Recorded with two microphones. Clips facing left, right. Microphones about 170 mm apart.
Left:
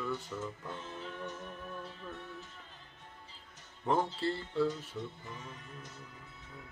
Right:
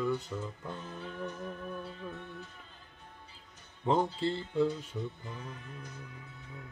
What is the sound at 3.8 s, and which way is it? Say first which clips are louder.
Music: right 2 dB; 15° right (ahead or behind).